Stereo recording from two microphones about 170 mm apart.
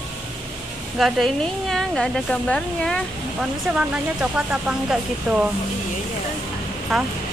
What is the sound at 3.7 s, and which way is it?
Speech, 5° right (ahead or behind).